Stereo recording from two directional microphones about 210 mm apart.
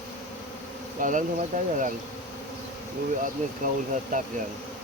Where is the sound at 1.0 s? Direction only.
40° right (ahead or behind).